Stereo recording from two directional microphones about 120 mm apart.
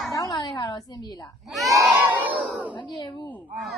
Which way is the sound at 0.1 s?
30° left (ahead or behind).